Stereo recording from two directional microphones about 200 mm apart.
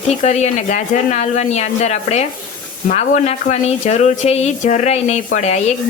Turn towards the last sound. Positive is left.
turn(degrees=35)  # may be behind; listen again after turning